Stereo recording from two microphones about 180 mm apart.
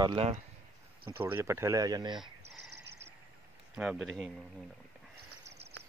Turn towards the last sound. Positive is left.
turn(degrees=0)  # may be behind; listen again after turning